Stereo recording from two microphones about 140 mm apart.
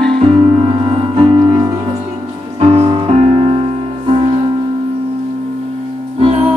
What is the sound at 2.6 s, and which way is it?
Music, 45° right (ahead or behind).